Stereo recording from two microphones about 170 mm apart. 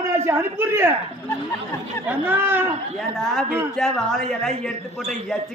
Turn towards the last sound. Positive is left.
turn(degrees=5)  # may be behind; listen again after turning